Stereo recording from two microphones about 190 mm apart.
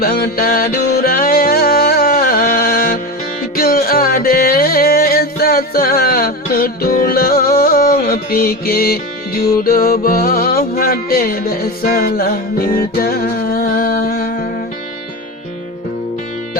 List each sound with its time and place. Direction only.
0.0 s music: 55° left (ahead or behind)